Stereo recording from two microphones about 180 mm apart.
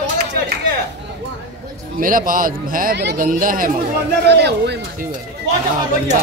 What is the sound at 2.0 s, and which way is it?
A man's voice, 50° right (ahead or behind).